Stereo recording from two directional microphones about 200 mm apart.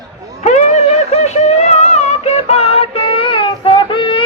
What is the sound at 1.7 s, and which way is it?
Child singing, 35° left (ahead or behind).